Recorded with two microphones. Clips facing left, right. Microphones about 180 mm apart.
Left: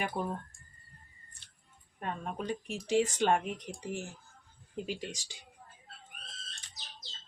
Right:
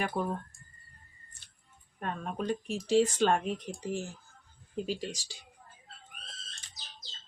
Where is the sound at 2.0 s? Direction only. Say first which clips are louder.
Right 2 dB; 20° left (ahead or behind).